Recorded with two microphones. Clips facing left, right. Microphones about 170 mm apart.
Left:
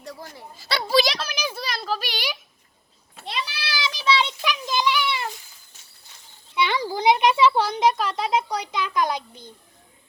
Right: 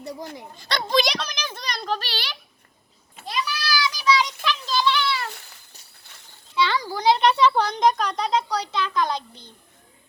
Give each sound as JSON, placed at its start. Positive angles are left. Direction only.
{"t": 0.0, "sound": "speech", "side_deg": -15}
{"t": 0.5, "sound": "speech", "side_deg": 5}
{"t": 3.2, "sound": "a sound", "side_deg": 25}
{"t": 4.4, "sound": "children playing", "side_deg": 20}
{"t": 5.3, "sound": "a sound", "side_deg": -65}
{"t": 6.5, "sound": "speech", "side_deg": 20}